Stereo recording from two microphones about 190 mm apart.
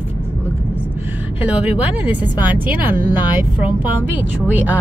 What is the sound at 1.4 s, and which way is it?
A woman's voice, 10° right (ahead or behind).